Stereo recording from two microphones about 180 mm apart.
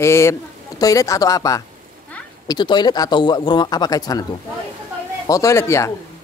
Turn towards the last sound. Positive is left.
turn(degrees=15)  # may be behind; listen again after turning